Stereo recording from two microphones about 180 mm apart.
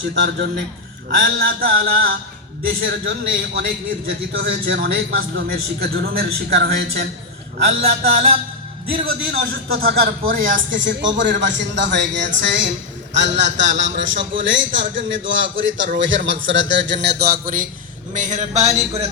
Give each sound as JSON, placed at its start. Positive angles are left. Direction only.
{"t": 0.1, "sound": "a man's voice", "side_deg": -70}
{"t": 1.2, "sound": "a man's voice", "side_deg": -55}
{"t": 9.0, "sound": "a man's voice", "side_deg": -55}
{"t": 10.7, "sound": "a man's voice", "side_deg": -90}